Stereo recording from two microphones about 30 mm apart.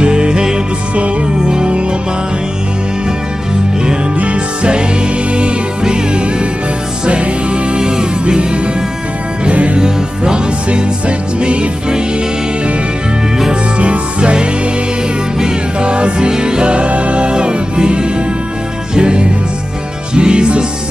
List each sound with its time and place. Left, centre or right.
0.0 s music: right
4.2 s music: right
5.3 s music: right
7.8 s music: right
9.4 s music: right
9.8 s music: right
10.7 s music: right
13.7 s music: right
15.4 s music: right
16.3 s music: right
16.7 s music: right